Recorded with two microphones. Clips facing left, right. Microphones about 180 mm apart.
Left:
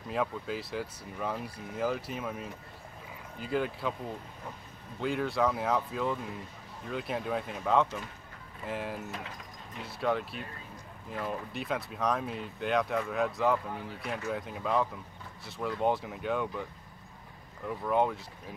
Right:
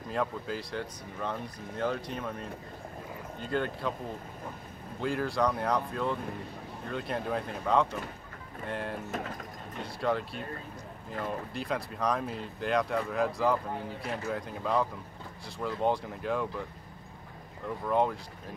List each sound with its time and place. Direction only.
0.1 s speech: centre (ahead or behind)
5.0 s speech: centre (ahead or behind)
9.1 s speech: 50° right (ahead or behind)
9.8 s speech: centre (ahead or behind)
17.6 s speech: centre (ahead or behind)